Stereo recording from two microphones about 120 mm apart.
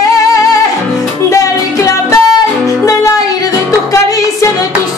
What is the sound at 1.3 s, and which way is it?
Music, 25° left (ahead or behind).